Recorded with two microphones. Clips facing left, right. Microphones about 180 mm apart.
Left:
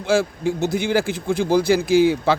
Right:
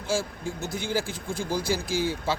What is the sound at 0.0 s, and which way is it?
Speech, 70° left (ahead or behind).